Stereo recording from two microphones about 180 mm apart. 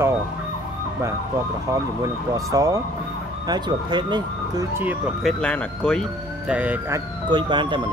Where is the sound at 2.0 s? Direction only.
20° right (ahead or behind).